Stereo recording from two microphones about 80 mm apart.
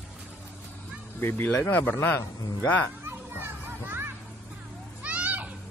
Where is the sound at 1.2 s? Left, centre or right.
Left.